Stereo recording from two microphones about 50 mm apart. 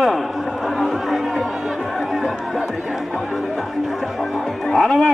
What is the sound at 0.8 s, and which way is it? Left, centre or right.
Music, centre.